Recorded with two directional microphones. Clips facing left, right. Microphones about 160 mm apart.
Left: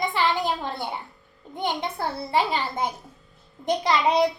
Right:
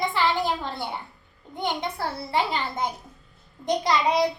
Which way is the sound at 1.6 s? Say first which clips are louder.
Left 1 dB; 15° left (ahead or behind).